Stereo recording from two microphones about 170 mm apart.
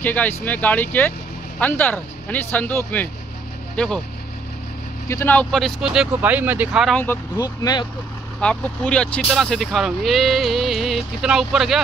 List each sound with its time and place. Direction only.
0.0 s speech: 10° left (ahead or behind)
5.0 s speech: 15° left (ahead or behind); by 7.0 s 5° right (ahead or behind)
7.0 s speech: 15° left (ahead or behind)
8.4 s speech: 5° left (ahead or behind)